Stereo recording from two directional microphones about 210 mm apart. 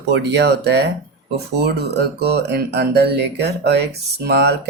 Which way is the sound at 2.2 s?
50° right (ahead or behind).